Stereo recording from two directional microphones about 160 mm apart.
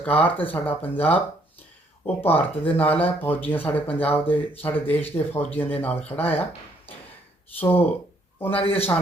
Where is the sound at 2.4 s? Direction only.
10° left (ahead or behind).